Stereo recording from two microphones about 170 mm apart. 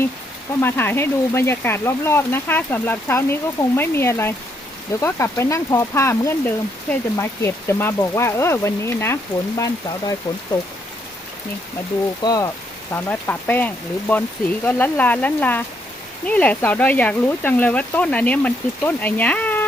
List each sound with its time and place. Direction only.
0.6 s speech: 15° left (ahead or behind)
12.2 s speech: 20° left (ahead or behind)